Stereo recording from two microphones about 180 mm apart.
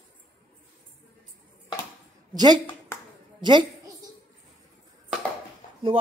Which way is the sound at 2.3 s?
20° right (ahead or behind).